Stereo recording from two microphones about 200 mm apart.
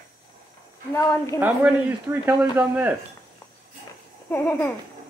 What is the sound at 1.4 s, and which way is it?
A man's voice, 10° right (ahead or behind).